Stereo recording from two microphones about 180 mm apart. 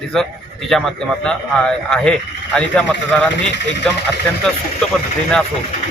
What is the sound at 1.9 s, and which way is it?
Speech, 5° left (ahead or behind).